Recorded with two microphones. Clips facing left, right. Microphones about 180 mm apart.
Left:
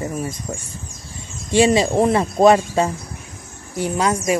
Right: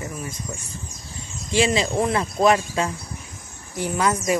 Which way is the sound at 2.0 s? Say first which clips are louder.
Left 6 dB; 30° left (ahead or behind).